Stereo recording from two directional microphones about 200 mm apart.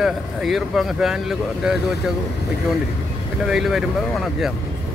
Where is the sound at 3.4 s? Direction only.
Centre (ahead or behind).